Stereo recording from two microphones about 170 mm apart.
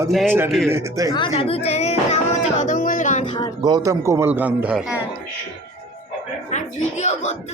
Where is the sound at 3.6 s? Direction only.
20° right (ahead or behind).